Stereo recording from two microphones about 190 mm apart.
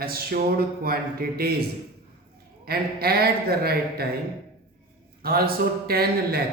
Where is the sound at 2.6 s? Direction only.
55° right (ahead or behind).